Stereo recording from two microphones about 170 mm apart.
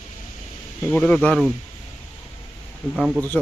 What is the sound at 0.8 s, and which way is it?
Speech, 10° left (ahead or behind).